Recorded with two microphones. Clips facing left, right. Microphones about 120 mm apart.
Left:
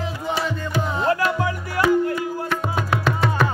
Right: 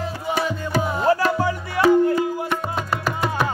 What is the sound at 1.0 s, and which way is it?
Music, 35° right (ahead or behind).